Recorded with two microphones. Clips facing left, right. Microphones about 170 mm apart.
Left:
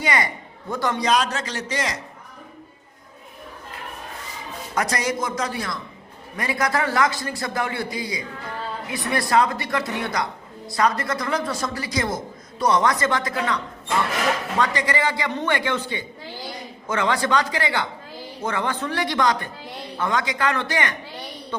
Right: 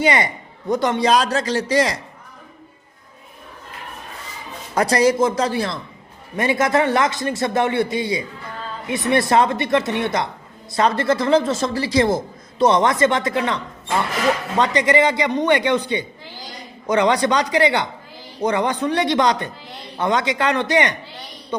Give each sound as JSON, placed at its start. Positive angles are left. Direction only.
{"t": 0.0, "sound": "a man's voice", "side_deg": -25}
{"t": 4.7, "sound": "a man's voice", "side_deg": -30}
{"t": 14.6, "sound": "a man's voice", "side_deg": -20}